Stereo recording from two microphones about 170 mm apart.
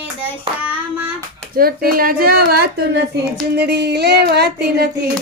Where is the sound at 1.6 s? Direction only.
60° right (ahead or behind); by 3.2 s 80° right.